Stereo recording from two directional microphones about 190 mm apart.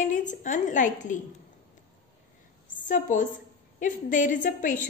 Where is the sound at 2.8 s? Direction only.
45° left (ahead or behind).